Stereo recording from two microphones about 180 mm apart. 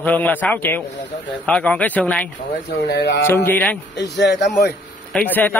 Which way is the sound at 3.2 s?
10° left (ahead or behind).